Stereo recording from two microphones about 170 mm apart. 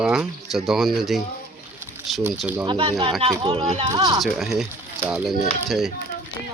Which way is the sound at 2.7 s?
35° right (ahead or behind).